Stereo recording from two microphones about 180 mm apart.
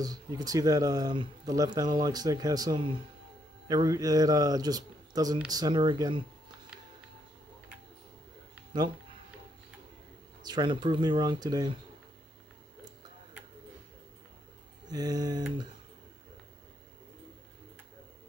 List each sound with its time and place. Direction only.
0.0 s speech: 20° right (ahead or behind)
10.4 s speech: 25° right (ahead or behind)
14.9 s speech: 20° right (ahead or behind)